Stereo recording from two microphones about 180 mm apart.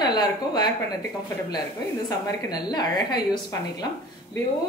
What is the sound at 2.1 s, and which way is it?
A woman's voice, 20° left (ahead or behind).